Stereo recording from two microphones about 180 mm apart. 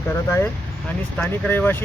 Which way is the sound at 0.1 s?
10° left (ahead or behind).